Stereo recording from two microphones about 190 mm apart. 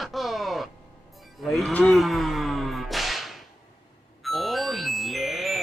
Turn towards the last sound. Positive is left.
turn(degrees=0)  # may be behind; listen again after turning